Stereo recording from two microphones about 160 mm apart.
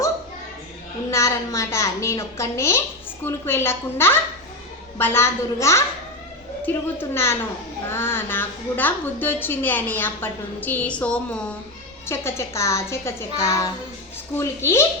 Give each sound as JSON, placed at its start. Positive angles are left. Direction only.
{"t": 1.1, "sound": "a child's voice", "side_deg": 20}